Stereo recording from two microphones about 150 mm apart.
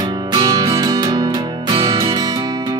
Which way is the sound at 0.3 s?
25° right (ahead or behind).